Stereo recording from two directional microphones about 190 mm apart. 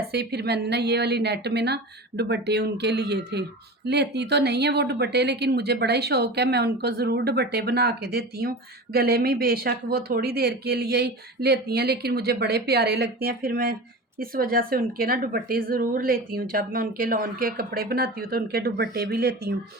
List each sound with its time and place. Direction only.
0.1 s a woman's voice: 60° right (ahead or behind)